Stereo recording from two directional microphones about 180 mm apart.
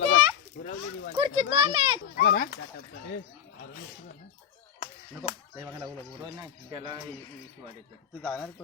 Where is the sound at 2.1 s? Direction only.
55° left (ahead or behind).